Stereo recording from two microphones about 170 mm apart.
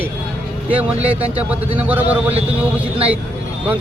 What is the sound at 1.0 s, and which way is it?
Speech, 35° right (ahead or behind).